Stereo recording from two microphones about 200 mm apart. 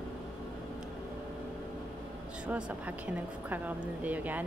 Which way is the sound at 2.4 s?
5° right (ahead or behind).